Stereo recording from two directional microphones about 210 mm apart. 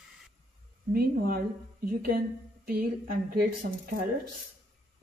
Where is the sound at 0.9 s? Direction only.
45° right (ahead or behind).